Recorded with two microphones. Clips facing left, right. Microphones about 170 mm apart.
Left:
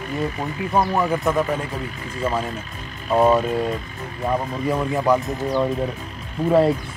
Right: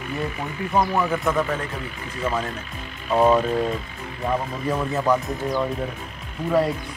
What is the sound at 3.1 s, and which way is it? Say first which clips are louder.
Speech: left 1 dB; 5° left (ahead or behind).